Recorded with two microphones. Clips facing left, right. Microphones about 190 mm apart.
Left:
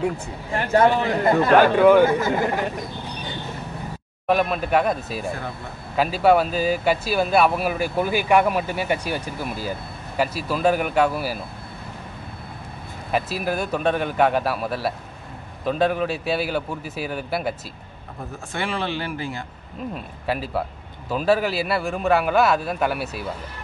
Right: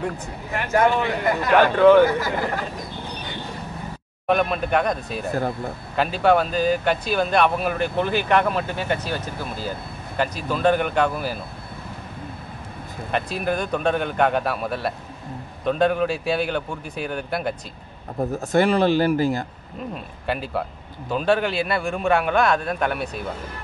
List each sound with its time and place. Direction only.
0.5 s a man's voice: 30° left (ahead or behind)
1.8 s speech: 10° left (ahead or behind)
2.0 s speech: 25° left (ahead or behind)
4.3 s speech: centre (ahead or behind)
13.1 s speech: 5° left (ahead or behind)
18.3 s speech: 40° right (ahead or behind)
20.2 s speech: centre (ahead or behind)